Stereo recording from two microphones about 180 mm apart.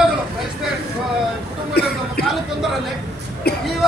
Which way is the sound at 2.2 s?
Centre (ahead or behind).